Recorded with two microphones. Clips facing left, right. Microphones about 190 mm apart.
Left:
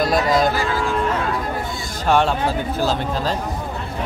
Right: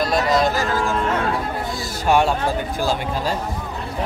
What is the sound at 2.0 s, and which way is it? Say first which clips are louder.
Speech: even; 10° right (ahead or behind).